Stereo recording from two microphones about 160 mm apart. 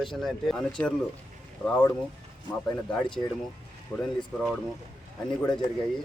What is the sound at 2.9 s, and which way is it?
Speech, 5° left (ahead or behind).